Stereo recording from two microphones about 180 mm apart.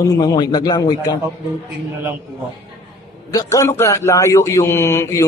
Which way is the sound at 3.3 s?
15° left (ahead or behind).